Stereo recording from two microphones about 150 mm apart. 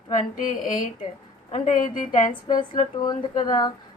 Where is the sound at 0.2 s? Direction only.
60° left (ahead or behind).